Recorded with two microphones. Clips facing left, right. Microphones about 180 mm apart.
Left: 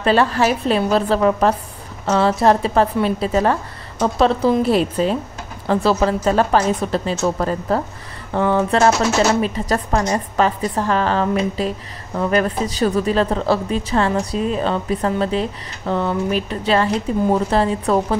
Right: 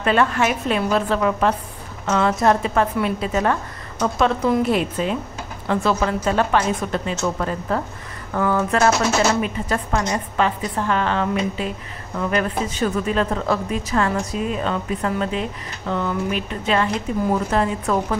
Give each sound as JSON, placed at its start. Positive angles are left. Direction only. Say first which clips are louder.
{"t": 0.0, "sound": "a woman's voice", "louder": "left 3 dB", "side_deg": 35}